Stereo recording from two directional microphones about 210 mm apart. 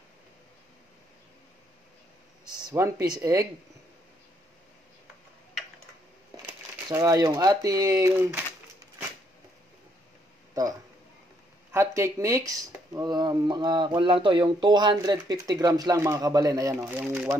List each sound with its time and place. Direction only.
2.4 s speech: 20° right (ahead or behind)
6.9 s speech: 15° right (ahead or behind)
11.7 s speech: 15° right (ahead or behind)